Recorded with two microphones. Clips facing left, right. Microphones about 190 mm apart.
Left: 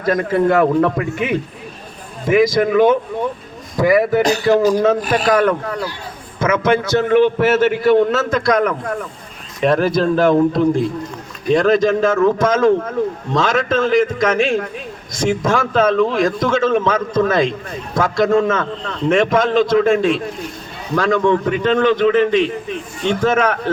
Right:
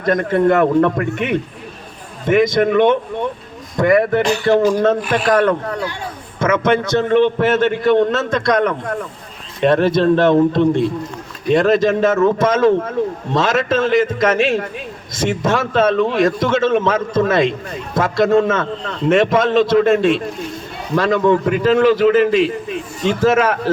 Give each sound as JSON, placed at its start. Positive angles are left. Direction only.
{"t": 0.0, "sound": "a man's voice", "side_deg": 5}
{"t": 4.5, "sound": "speech", "side_deg": 40}
{"t": 6.4, "sound": "a man's voice", "side_deg": 0}